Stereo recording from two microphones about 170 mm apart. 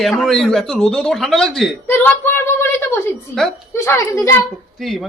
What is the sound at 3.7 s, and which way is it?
Speech, 15° left (ahead or behind).